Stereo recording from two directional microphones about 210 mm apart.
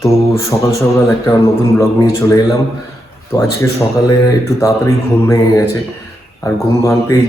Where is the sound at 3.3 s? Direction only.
15° left (ahead or behind).